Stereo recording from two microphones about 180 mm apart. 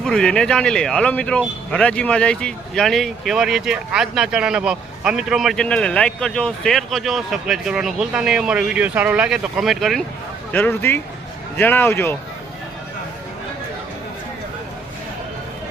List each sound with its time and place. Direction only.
0.0 s speech: 5° left (ahead or behind)
10.5 s a man's voice: 10° left (ahead or behind)